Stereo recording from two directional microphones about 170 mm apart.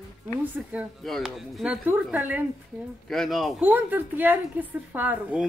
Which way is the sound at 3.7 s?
10° right (ahead or behind).